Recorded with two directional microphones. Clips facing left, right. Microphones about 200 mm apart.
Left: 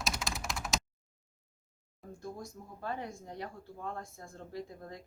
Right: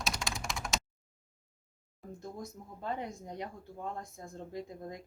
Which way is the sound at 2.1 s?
20° right (ahead or behind).